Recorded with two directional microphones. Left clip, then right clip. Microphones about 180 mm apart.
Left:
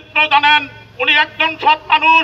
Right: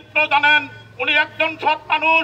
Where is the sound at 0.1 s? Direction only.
15° right (ahead or behind).